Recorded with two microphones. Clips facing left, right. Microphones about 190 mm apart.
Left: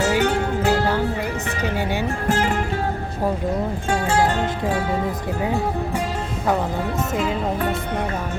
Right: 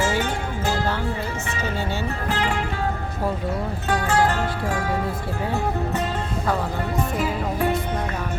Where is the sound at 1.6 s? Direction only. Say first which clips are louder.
Left 4 dB; 15° left (ahead or behind).